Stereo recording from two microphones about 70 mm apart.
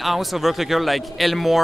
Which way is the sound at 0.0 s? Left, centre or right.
Centre.